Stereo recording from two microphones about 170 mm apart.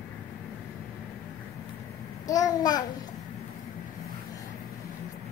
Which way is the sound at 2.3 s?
20° left (ahead or behind).